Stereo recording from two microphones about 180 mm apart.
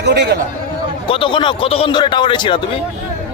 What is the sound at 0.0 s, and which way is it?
Speech, 70° right (ahead or behind).